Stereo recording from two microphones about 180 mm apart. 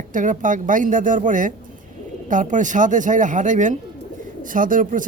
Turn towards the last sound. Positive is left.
turn(degrees=-45)  # may be behind; listen again after turning